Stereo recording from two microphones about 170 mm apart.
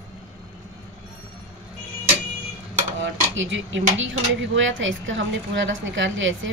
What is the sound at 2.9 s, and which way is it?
A woman's voice, 90° right.